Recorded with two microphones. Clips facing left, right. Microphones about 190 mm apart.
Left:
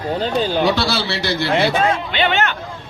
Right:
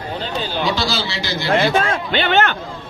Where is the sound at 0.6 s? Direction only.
65° left (ahead or behind).